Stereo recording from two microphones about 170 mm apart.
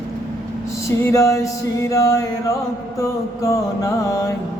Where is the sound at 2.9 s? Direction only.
20° left (ahead or behind).